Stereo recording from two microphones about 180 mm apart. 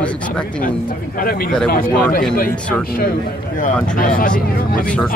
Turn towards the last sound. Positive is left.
turn(degrees=45)  # may be behind; listen again after turning